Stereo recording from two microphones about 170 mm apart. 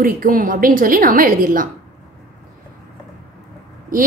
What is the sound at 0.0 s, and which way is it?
A woman's voice, 55° right (ahead or behind).